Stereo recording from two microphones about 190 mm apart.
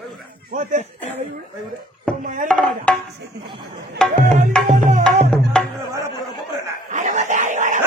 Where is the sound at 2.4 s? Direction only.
5° left (ahead or behind).